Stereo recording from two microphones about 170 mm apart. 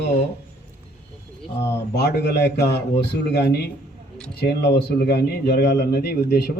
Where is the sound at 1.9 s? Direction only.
75° left (ahead or behind).